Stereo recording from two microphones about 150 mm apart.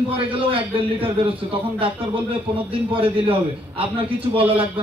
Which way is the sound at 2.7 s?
35° right (ahead or behind).